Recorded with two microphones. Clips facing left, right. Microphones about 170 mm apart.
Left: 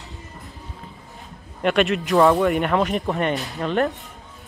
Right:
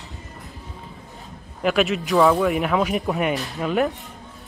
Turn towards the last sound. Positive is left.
turn(degrees=0)  # may be behind; listen again after turning